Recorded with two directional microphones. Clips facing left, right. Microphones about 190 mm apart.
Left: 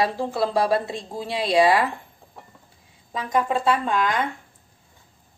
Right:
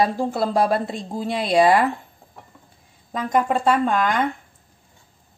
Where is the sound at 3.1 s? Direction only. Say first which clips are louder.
Right 2 dB; 50° right (ahead or behind).